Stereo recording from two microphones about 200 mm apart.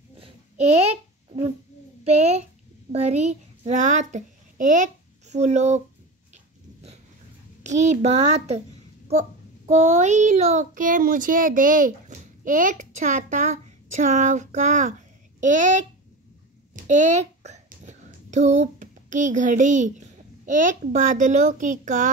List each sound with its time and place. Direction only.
0.2 s a sound: 35° right (ahead or behind)
2.0 s a child's voice: 35° right (ahead or behind)
7.6 s a child's voice: 35° right (ahead or behind)
9.7 s a child's voice: 35° right (ahead or behind)